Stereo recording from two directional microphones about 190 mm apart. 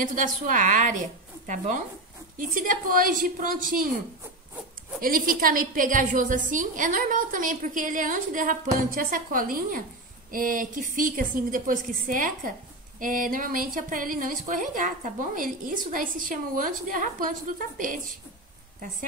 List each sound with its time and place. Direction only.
0.0 s a woman's voice: 45° right (ahead or behind)
2.3 s a woman's voice: 45° right (ahead or behind)
5.0 s a woman's voice: 50° right (ahead or behind)